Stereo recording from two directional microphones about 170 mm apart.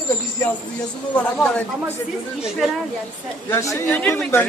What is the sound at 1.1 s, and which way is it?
Speech, 5° left (ahead or behind).